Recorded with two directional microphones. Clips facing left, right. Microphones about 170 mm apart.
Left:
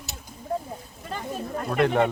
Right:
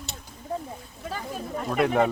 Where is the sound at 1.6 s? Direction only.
Centre (ahead or behind).